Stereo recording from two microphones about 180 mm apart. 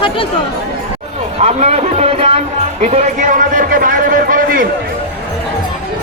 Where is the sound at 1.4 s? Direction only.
35° right (ahead or behind).